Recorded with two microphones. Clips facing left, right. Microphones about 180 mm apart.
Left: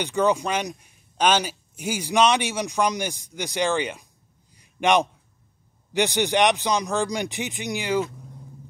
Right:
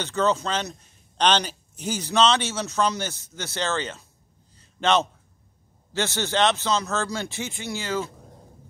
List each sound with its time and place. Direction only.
0.0 s a man's voice: 15° left (ahead or behind)
4.6 s a sound: 15° left (ahead or behind)
5.9 s a man's voice: 15° left (ahead or behind)